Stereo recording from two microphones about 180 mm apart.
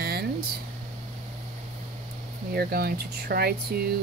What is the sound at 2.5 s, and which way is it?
Speech, 60° right (ahead or behind).